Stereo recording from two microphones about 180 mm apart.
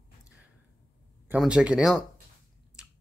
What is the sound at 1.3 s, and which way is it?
Speech, 5° right (ahead or behind).